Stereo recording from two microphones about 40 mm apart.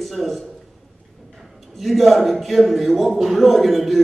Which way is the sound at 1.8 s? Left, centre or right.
Centre.